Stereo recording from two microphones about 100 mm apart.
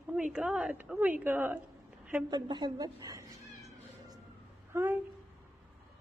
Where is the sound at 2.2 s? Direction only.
45° right (ahead or behind).